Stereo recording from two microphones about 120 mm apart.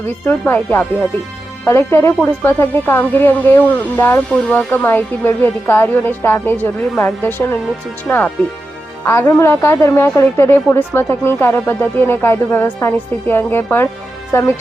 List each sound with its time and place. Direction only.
0.0 s a woman's voice: 20° left (ahead or behind)